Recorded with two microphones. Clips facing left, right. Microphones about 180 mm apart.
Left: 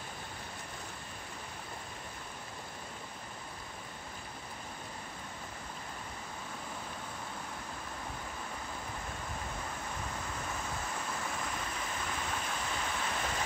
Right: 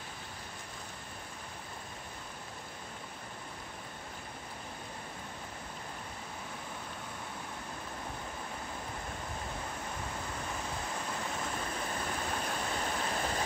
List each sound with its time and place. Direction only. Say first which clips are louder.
11.8 s waterfall: right 2 dB; 35° right (ahead or behind)